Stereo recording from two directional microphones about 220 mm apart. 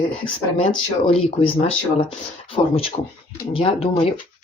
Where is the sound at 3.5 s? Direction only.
25° left (ahead or behind).